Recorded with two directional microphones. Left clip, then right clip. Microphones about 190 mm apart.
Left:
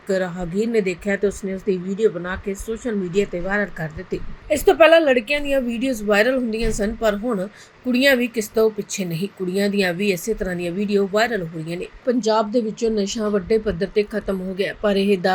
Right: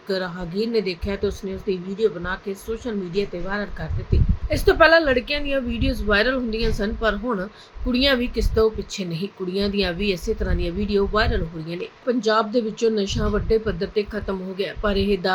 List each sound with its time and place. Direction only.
0.2 s speech: 10° left (ahead or behind)
14.9 s speech: 40° right (ahead or behind)